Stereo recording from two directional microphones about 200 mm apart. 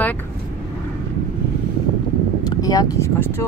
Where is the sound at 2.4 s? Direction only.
20° left (ahead or behind).